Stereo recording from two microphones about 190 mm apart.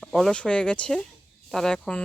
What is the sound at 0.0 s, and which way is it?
Speech, centre (ahead or behind).